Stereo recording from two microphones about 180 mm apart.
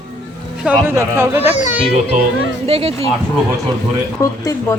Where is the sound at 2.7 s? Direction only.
35° right (ahead or behind).